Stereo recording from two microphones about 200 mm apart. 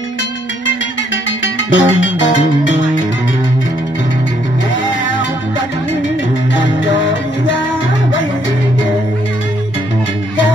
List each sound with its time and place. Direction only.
0.7 s music: 70° left (ahead or behind)